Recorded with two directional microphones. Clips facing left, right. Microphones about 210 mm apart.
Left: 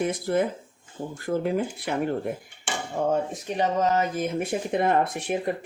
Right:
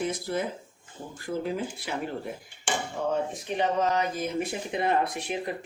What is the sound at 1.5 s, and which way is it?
Speech, 55° left (ahead or behind).